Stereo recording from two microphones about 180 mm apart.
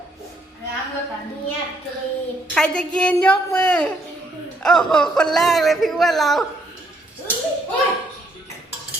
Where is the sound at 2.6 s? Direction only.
5° left (ahead or behind).